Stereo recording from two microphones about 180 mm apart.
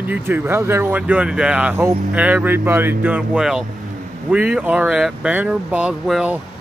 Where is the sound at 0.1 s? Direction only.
10° right (ahead or behind).